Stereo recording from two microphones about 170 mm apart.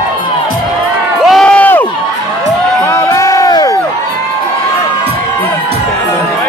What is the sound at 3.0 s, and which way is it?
Crowd, 20° left (ahead or behind).